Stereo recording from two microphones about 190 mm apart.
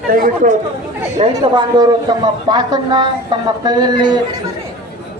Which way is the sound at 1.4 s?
20° right (ahead or behind).